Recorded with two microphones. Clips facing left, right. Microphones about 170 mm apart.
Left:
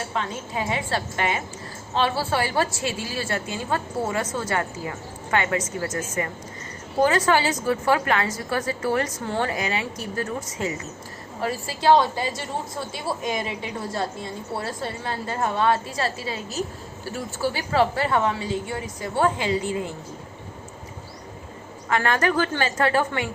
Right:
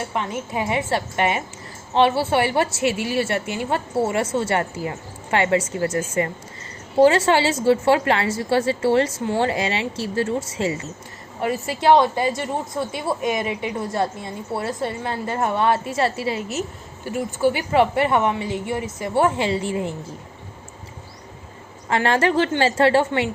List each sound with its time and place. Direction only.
0.1 s a woman's voice: 20° right (ahead or behind)
21.8 s a woman's voice: 30° right (ahead or behind)